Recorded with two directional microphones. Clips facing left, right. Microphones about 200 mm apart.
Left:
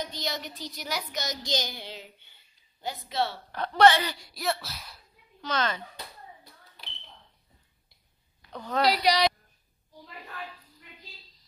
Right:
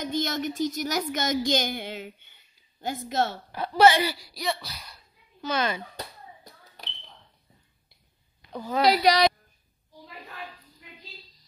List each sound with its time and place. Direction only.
0.0 s a woman's voice: 50° right (ahead or behind)
3.5 s speech: 5° right (ahead or behind)
5.4 s speech: 10° right (ahead or behind)
8.4 s a sound: 10° right (ahead or behind)
8.8 s a woman's voice: 50° right (ahead or behind)